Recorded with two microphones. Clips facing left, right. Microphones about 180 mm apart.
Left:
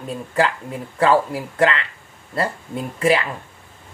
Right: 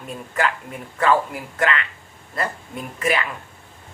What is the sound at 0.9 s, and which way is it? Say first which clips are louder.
Speech: left 3 dB; 30° left (ahead or behind).